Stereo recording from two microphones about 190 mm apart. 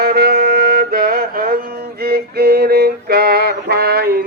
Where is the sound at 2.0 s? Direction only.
55° right (ahead or behind).